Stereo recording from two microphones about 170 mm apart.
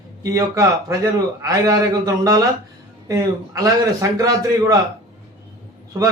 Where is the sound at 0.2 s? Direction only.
20° right (ahead or behind).